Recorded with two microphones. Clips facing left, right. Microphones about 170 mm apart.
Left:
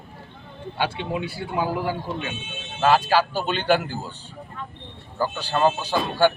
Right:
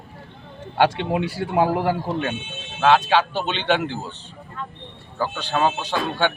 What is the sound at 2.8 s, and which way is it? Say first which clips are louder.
Speech: right 2 dB; 5° left (ahead or behind).